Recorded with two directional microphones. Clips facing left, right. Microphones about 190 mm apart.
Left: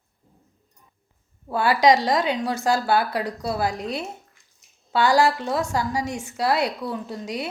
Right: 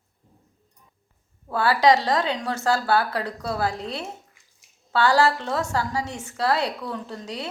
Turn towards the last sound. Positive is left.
turn(degrees=10)  # may be behind; listen again after turning